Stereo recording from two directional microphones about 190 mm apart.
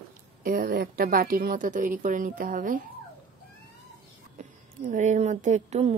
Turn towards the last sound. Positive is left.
turn(degrees=-35)  # may be behind; listen again after turning